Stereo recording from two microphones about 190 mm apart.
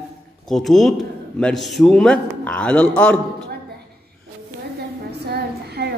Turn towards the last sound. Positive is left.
turn(degrees=-60)  # may be behind; listen again after turning